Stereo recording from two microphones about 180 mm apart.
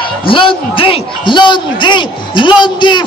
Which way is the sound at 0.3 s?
30° left (ahead or behind).